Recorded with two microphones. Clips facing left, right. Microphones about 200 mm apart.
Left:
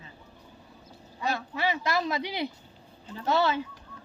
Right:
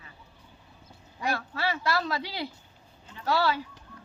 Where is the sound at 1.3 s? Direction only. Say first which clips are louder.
Left 2 dB; 20° left (ahead or behind).